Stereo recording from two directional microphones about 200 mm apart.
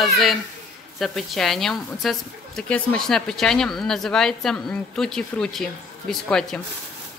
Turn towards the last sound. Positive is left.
turn(degrees=5)  # may be behind; listen again after turning